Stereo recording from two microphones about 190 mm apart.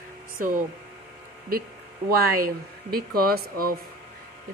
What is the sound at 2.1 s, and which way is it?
Speech, 50° right (ahead or behind).